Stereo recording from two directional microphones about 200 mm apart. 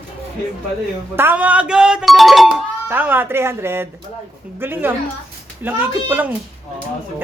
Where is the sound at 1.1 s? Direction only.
10° right (ahead or behind).